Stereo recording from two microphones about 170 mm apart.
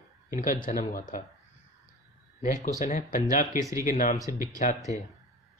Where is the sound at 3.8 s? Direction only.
50° left (ahead or behind).